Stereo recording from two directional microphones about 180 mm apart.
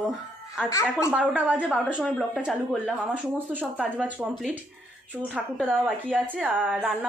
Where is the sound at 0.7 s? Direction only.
15° left (ahead or behind).